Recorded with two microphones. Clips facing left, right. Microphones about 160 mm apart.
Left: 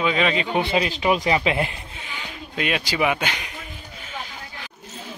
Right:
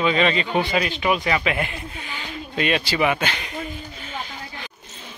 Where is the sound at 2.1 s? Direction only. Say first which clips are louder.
Right 2 dB; 10° left (ahead or behind).